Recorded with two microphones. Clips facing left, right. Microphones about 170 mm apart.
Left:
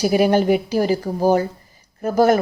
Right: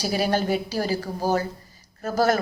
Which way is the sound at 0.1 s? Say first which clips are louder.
Left 6 dB; 15° left (ahead or behind).